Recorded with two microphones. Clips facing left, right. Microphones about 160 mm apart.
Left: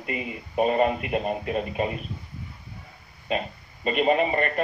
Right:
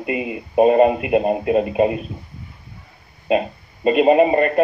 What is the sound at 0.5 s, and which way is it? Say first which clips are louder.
Speech: right 9 dB; 40° right (ahead or behind).